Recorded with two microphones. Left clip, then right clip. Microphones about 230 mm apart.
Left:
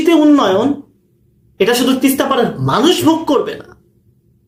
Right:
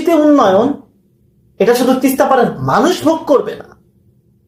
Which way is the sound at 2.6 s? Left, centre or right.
Left.